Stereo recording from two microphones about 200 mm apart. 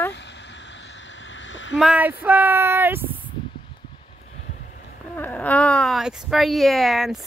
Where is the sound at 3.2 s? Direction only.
25° left (ahead or behind).